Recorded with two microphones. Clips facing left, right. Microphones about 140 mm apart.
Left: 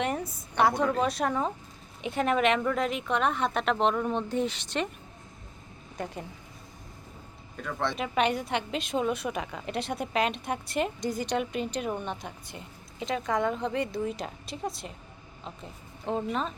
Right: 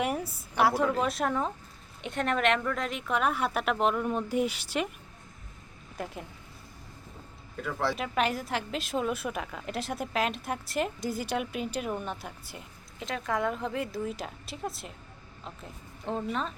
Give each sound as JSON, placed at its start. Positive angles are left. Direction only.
{"t": 0.0, "sound": "a sound", "side_deg": -5}
{"t": 0.5, "sound": "a woman's voice", "side_deg": -5}
{"t": 6.0, "sound": "a woman's voice", "side_deg": 0}
{"t": 7.5, "sound": "a woman's voice", "side_deg": -5}